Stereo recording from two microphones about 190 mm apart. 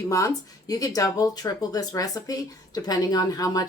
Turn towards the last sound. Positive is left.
turn(degrees=20)  # may be behind; listen again after turning